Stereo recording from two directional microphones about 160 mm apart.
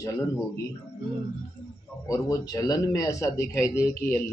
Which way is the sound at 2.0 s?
20° left (ahead or behind).